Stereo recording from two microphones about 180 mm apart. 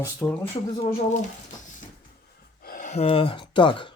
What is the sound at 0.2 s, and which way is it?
Speech, 10° left (ahead or behind).